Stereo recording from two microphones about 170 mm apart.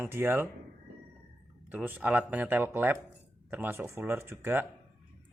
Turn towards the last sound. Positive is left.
turn(degrees=-15)  # may be behind; listen again after turning